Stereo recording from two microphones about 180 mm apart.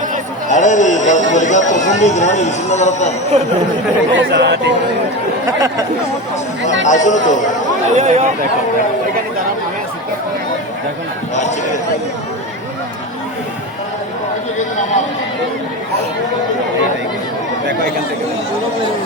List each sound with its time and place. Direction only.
0.4 s a man's voice: 45° left (ahead or behind)
4.1 s speech: 80° right
5.5 s speech: 20° right (ahead or behind)
6.8 s a man's voice: 45° left (ahead or behind)
7.9 s speech: 40° right (ahead or behind)
11.3 s speech: 40° left (ahead or behind)